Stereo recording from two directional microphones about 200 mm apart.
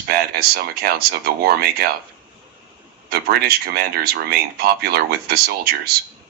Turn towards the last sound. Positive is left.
turn(degrees=-50)  # may be behind; listen again after turning